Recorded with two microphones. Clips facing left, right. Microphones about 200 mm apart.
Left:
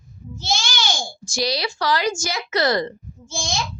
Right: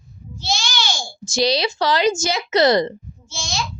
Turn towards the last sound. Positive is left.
turn(degrees=50)  # may be behind; listen again after turning